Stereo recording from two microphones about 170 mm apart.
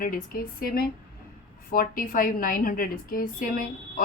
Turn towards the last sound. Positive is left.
turn(degrees=55)  # may be behind; listen again after turning